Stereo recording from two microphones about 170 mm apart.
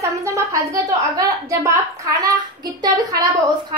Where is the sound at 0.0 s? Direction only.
20° right (ahead or behind).